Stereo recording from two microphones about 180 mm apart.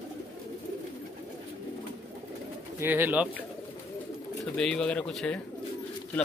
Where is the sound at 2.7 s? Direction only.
10° right (ahead or behind).